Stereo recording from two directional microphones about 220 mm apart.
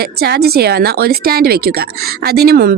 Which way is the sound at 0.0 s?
45° right (ahead or behind).